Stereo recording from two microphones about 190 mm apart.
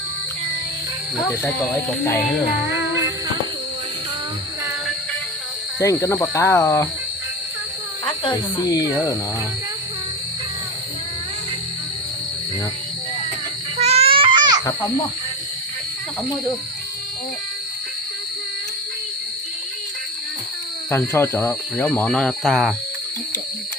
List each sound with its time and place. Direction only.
1.3 s speech: 15° left (ahead or behind)
2.6 s music: 15° right (ahead or behind)
5.8 s speech: 15° left (ahead or behind)
8.0 s speech: 25° left (ahead or behind)
13.7 s baby cry: 35° right (ahead or behind)
20.9 s speech: 15° left (ahead or behind)